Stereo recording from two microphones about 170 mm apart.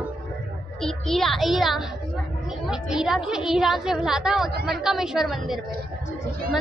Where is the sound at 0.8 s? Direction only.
Centre (ahead or behind).